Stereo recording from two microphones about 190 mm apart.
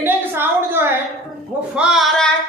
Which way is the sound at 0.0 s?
10° right (ahead or behind).